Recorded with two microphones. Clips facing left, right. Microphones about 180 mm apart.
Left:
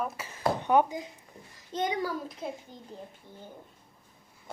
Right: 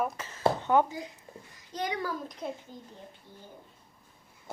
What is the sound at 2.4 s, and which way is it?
Speech, 5° left (ahead or behind).